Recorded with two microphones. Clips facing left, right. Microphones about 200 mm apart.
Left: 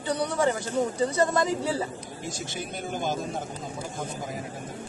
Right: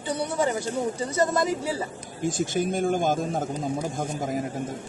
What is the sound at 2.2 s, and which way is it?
A man's voice, 50° right (ahead or behind).